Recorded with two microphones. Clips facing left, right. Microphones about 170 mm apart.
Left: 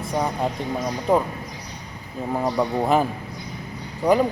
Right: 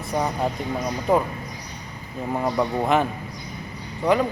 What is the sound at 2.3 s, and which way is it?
Speech, 5° left (ahead or behind).